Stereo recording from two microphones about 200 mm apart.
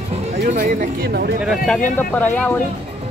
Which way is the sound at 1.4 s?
5° left (ahead or behind).